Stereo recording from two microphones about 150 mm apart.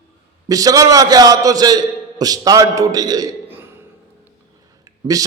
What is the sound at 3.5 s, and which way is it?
Burping, 15° right (ahead or behind).